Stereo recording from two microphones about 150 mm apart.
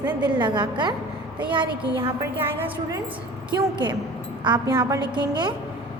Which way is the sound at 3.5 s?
30° right (ahead or behind).